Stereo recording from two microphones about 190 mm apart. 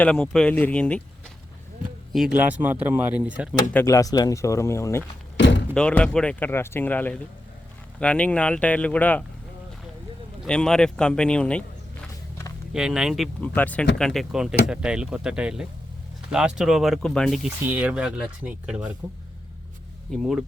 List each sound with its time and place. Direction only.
0.0 s speech: 5° left (ahead or behind)
2.1 s speech: 5° right (ahead or behind)
3.7 s speech: 15° left (ahead or behind)
5.4 s thunk: 70° left (ahead or behind)
5.7 s speech: 5° left (ahead or behind)
10.4 s speech: 5° left (ahead or behind)
12.7 s speech: centre (ahead or behind)
20.1 s speech: centre (ahead or behind)